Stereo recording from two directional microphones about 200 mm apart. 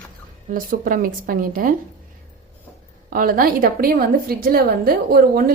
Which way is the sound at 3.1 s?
45° right (ahead or behind).